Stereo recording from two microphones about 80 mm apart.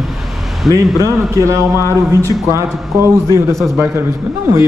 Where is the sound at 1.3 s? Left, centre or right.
Right.